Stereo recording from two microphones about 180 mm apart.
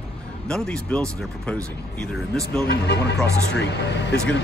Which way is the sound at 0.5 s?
5° left (ahead or behind).